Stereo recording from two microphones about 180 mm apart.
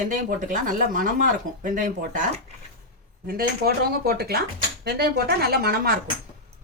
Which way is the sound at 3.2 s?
55° right (ahead or behind).